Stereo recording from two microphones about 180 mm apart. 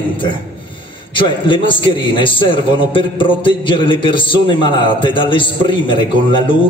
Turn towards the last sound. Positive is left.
turn(degrees=25)  # may be behind; listen again after turning